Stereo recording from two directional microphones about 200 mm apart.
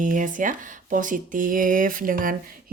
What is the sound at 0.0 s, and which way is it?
A woman's voice, 40° right (ahead or behind).